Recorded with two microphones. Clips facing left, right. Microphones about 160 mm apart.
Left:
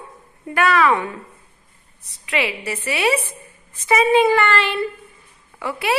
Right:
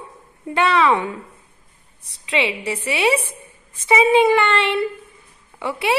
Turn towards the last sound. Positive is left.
turn(degrees=-25)  # may be behind; listen again after turning